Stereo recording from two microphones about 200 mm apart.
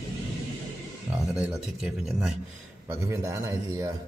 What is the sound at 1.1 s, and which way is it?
Speech, 5° right (ahead or behind).